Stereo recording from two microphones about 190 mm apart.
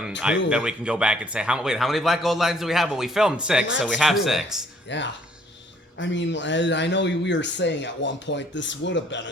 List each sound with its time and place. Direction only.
0.5 s speech: 5° right (ahead or behind)
4.9 s speech: 70° left (ahead or behind)